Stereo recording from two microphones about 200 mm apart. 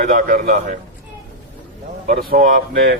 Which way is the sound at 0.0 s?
45° right (ahead or behind).